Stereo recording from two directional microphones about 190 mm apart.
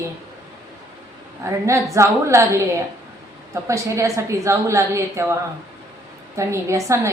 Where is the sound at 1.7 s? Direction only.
15° right (ahead or behind).